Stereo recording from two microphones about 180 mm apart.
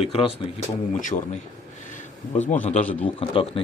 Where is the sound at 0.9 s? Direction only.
45° left (ahead or behind).